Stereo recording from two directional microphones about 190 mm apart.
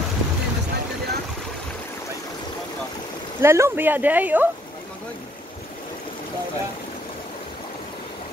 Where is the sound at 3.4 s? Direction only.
15° right (ahead or behind).